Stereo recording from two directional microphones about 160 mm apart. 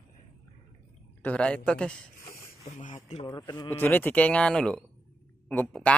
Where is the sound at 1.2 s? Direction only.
5° left (ahead or behind).